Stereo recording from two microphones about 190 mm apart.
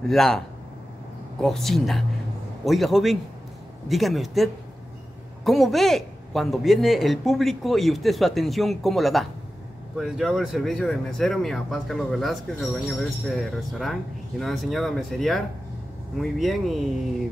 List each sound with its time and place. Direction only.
0.1 s speech: centre (ahead or behind)
1.4 s speech: centre (ahead or behind)